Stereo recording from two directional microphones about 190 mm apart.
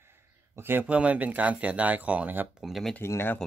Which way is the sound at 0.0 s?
10° right (ahead or behind).